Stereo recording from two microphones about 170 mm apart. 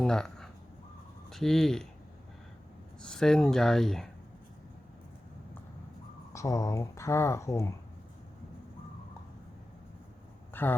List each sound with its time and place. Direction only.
0.0 s a sound: 5° left (ahead or behind)
1.3 s speech: centre (ahead or behind)
3.0 s speech: 5° left (ahead or behind)
6.3 s speech: 20° left (ahead or behind)
10.5 s speech: 10° left (ahead or behind)